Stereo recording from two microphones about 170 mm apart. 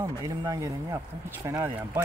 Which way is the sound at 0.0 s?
20° right (ahead or behind).